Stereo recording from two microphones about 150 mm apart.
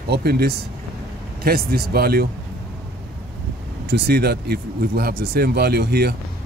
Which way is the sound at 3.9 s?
90° right.